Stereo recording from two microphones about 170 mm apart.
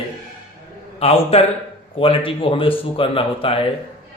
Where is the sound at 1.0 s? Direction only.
35° left (ahead or behind).